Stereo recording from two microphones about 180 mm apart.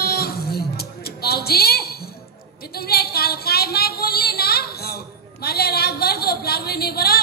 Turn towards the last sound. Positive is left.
turn(degrees=60)  # may be behind; listen again after turning